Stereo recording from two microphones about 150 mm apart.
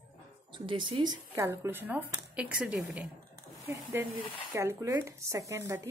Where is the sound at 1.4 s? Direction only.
15° right (ahead or behind).